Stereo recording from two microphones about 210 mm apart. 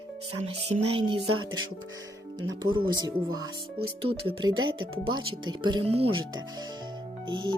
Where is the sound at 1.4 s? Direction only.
20° right (ahead or behind).